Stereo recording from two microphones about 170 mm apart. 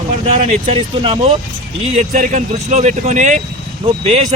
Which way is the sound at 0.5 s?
40° right (ahead or behind).